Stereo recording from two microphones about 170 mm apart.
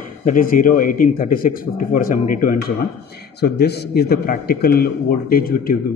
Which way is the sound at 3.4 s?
70° left (ahead or behind).